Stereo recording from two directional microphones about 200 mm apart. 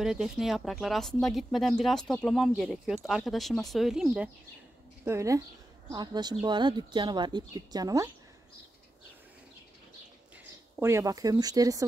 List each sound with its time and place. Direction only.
0.0 s speech: 5° right (ahead or behind)
10.3 s speech: 15° right (ahead or behind)